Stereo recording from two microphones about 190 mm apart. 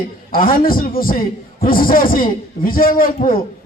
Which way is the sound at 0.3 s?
45° left (ahead or behind).